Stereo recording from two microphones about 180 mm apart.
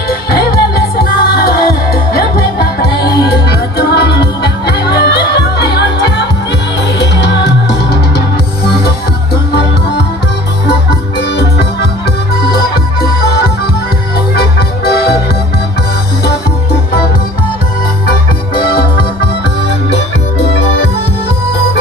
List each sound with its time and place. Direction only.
0.1 s music: 55° left (ahead or behind)
9.3 s music: 65° left (ahead or behind)
10.7 s music: 65° left (ahead or behind)
14.8 s music: 60° left (ahead or behind)
18.5 s music: 60° left (ahead or behind)